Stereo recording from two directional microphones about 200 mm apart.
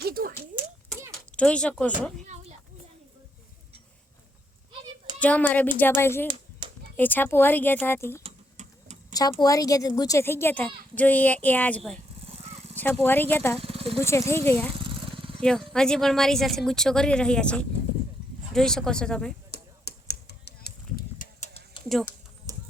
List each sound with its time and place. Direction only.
0.0 s a sound: 45° right (ahead or behind)
1.4 s speech: 5° left (ahead or behind)
2.2 s a sound: 35° right (ahead or behind)
5.2 s speech: 10° left (ahead or behind)
8.2 s typing: 35° right (ahead or behind)
9.4 s speech: 15° left (ahead or behind)
12.3 s vehicle: 30° right (ahead or behind)
12.7 s speech: 10° left (ahead or behind)
13.6 s vehicle: 30° right (ahead or behind)
14.0 s speech: 15° left (ahead or behind)
19.5 s a sound: 50° left (ahead or behind)
21.4 s a sound: 30° left (ahead or behind)
21.8 s speech: centre (ahead or behind)